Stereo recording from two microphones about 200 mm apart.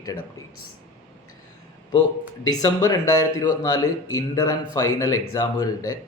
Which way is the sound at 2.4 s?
20° left (ahead or behind).